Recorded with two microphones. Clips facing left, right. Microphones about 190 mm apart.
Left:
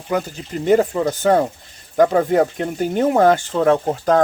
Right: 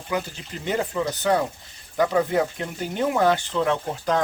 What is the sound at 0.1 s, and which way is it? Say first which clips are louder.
Speech: left 6 dB; 45° left (ahead or behind).